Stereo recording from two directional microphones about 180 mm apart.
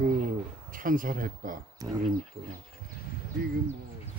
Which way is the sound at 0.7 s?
50° right (ahead or behind).